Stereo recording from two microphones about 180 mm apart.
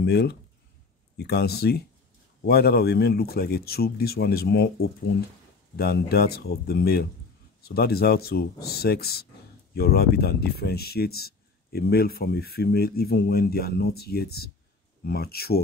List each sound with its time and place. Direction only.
0.0 s speech: 65° left (ahead or behind)
5.8 s speech: 60° left (ahead or behind)